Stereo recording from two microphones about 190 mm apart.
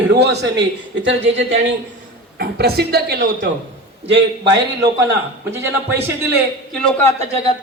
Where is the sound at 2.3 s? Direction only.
55° right (ahead or behind).